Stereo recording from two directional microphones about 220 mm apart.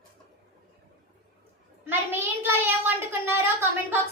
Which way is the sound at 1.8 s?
10° right (ahead or behind).